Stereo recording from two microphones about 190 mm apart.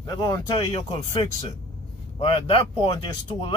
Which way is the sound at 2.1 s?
25° left (ahead or behind).